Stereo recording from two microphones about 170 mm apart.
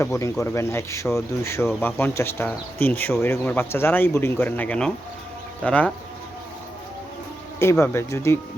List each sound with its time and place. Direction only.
0.0 s speech: 20° left (ahead or behind)
7.6 s speech: 15° left (ahead or behind)